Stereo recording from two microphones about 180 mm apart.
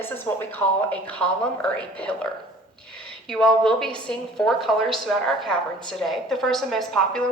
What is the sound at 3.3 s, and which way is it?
A woman's voice, 5° left (ahead or behind).